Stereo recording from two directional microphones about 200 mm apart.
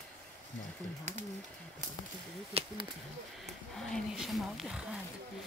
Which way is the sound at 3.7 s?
Centre (ahead or behind).